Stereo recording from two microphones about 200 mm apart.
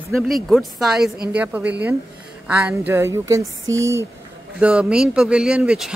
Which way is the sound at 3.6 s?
70° right (ahead or behind).